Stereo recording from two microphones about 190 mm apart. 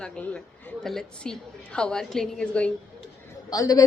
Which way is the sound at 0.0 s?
5° left (ahead or behind).